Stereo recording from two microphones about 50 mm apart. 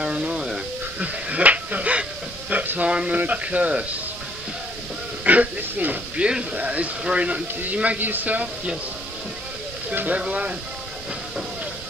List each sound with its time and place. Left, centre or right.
0.0 s a sound: right
1.0 s a sound: right
2.9 s speech: centre
3.2 s speech: right
5.2 s speech: right
6.1 s speech: right
8.0 s speech: right
9.9 s speech: right